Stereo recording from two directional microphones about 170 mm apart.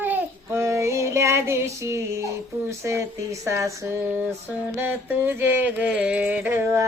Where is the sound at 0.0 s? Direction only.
10° right (ahead or behind).